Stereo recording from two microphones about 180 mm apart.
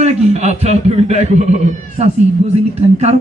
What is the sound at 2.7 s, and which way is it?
Speech, 35° right (ahead or behind).